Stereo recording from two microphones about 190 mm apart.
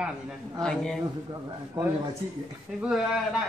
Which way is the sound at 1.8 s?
10° right (ahead or behind).